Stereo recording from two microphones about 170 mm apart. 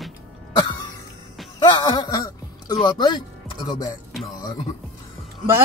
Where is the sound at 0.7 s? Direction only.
25° left (ahead or behind).